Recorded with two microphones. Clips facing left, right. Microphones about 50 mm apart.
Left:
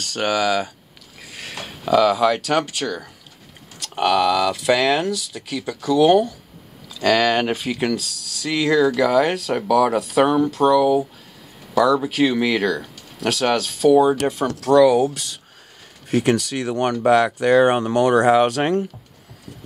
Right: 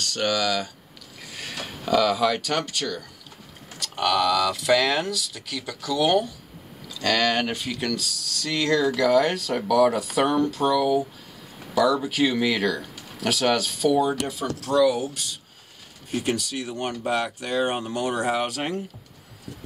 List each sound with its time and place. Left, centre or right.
0.0 s speech: left
1.2 s speech: centre
13.8 s speech: centre
14.4 s speech: left